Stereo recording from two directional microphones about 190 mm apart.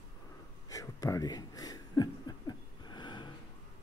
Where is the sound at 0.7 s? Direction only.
20° left (ahead or behind).